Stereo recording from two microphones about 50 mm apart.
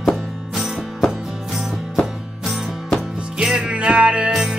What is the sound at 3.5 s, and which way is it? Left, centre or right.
Music, centre.